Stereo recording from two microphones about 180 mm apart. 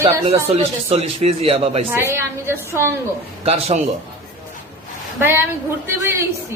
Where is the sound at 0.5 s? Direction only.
35° right (ahead or behind).